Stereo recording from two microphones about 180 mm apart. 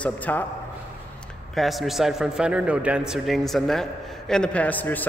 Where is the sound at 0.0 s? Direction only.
10° left (ahead or behind).